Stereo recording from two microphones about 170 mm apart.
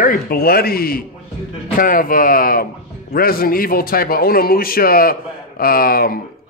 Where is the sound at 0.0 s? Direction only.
55° left (ahead or behind).